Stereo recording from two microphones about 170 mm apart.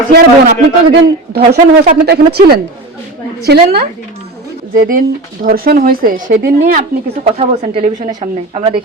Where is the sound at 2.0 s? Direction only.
70° right (ahead or behind).